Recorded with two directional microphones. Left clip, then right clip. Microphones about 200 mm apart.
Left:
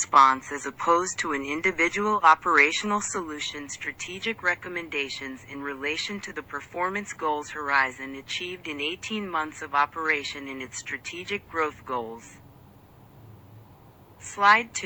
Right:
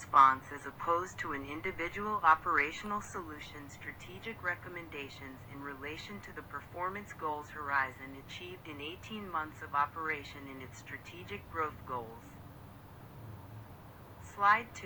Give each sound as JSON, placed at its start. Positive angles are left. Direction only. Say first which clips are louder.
{"t": 0.0, "sound": "speech", "louder": "left 7 dB", "side_deg": 25}
{"t": 14.3, "sound": "speech", "louder": "left 9 dB", "side_deg": 30}